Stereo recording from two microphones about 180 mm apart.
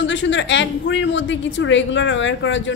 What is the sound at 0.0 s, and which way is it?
Speech, 90° left.